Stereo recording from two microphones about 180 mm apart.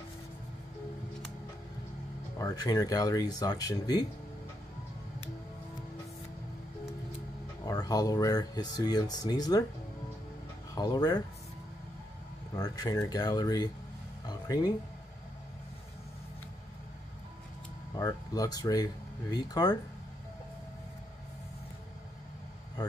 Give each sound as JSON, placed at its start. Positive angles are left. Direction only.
{"t": 2.3, "sound": "speech", "side_deg": 20}
{"t": 7.6, "sound": "speech", "side_deg": 20}
{"t": 10.7, "sound": "speech", "side_deg": 20}
{"t": 12.5, "sound": "speech", "side_deg": 20}
{"t": 14.2, "sound": "music", "side_deg": 20}
{"t": 17.9, "sound": "speech", "side_deg": 20}
{"t": 22.8, "sound": "vehicle", "side_deg": 20}